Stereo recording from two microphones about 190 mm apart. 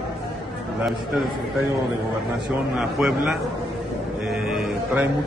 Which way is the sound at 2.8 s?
Centre (ahead or behind).